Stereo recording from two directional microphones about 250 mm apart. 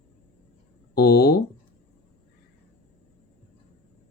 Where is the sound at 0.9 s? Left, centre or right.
Left.